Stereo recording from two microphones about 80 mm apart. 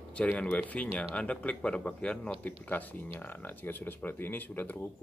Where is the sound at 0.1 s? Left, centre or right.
Centre.